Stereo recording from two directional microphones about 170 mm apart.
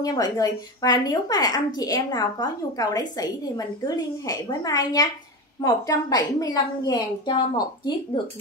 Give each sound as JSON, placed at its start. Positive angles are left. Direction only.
{"t": 0.0, "sound": "a woman's voice", "side_deg": 20}